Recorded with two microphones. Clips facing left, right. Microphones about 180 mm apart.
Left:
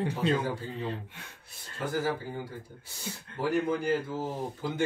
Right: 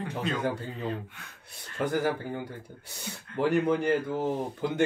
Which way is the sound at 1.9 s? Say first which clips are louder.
Right 1 dB; 65° right (ahead or behind).